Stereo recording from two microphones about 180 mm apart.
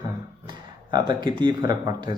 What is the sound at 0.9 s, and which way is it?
A man's voice, 25° right (ahead or behind).